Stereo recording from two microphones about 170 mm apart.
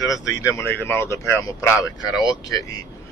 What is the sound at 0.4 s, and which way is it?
Speech, 15° left (ahead or behind).